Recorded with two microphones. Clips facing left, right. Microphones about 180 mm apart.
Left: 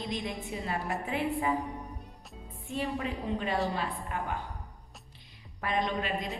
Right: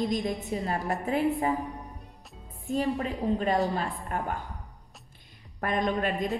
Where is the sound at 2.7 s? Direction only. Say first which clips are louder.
Right 5 dB; 40° right (ahead or behind).